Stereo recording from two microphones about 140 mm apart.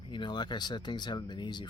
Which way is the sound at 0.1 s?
35° left (ahead or behind).